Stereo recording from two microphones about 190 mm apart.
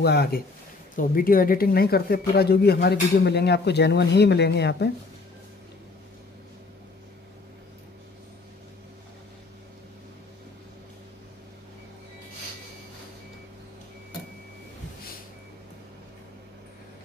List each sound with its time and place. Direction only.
0.0 s speech: 55° left (ahead or behind)